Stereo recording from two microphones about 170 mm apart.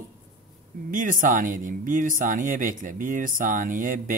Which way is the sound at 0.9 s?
50° right (ahead or behind).